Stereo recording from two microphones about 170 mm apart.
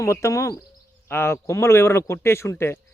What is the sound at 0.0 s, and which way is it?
Speech, 15° left (ahead or behind).